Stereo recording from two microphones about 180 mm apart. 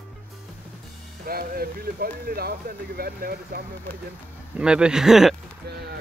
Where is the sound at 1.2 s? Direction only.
55° right (ahead or behind).